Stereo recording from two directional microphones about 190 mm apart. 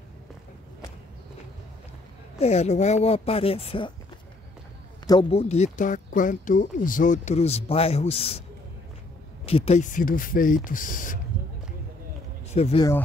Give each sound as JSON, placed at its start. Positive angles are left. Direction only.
{"t": 2.4, "sound": "speech", "side_deg": 35}
{"t": 5.3, "sound": "speech", "side_deg": 35}
{"t": 9.5, "sound": "speech", "side_deg": 35}
{"t": 12.5, "sound": "speech", "side_deg": 35}